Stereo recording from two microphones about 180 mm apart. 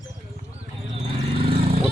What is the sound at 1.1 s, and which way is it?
Vehicle, 30° right (ahead or behind).